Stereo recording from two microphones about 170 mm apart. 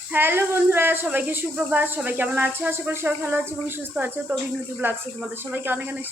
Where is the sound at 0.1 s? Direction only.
10° right (ahead or behind).